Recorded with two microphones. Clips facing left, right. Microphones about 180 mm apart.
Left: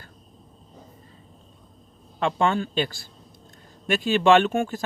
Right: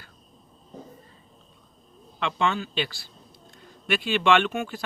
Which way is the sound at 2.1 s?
45° left (ahead or behind).